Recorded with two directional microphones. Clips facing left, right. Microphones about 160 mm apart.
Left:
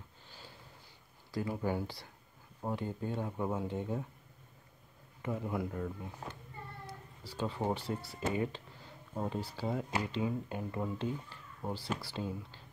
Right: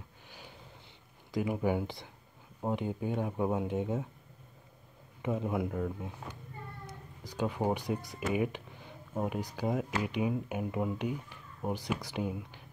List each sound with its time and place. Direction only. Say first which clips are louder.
0.3 s a sound: right 3 dB; 15° right (ahead or behind)
1.3 s speech: right 4 dB; 15° right (ahead or behind)
5.2 s speech: right 4 dB; 20° right (ahead or behind)